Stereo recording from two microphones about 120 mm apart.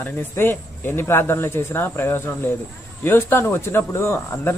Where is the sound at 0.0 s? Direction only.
15° left (ahead or behind).